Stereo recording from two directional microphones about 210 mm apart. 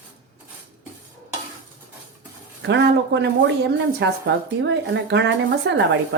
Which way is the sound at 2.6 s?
55° right (ahead or behind).